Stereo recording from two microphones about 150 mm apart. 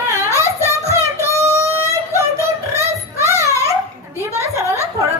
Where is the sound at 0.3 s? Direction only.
20° left (ahead or behind).